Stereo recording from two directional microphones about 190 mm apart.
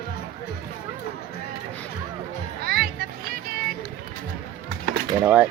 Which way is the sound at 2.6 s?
55° right (ahead or behind).